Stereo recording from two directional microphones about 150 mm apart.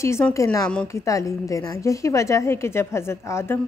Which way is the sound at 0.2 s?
10° left (ahead or behind).